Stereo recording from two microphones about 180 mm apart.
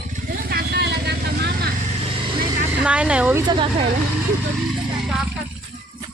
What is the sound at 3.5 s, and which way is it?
Speech, 30° right (ahead or behind).